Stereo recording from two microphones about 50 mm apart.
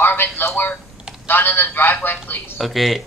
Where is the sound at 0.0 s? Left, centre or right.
Left.